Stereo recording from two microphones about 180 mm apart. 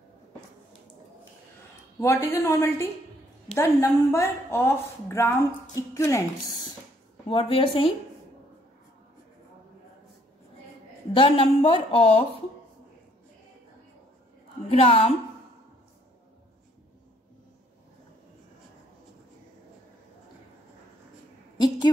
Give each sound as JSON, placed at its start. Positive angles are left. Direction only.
{"t": 2.0, "sound": "a woman's voice", "side_deg": 15}
{"t": 6.5, "sound": "a sound", "side_deg": 20}
{"t": 7.2, "sound": "speech", "side_deg": 30}
{"t": 11.1, "sound": "speech", "side_deg": 30}
{"t": 14.7, "sound": "speech", "side_deg": 30}
{"t": 21.5, "sound": "a woman's voice", "side_deg": 25}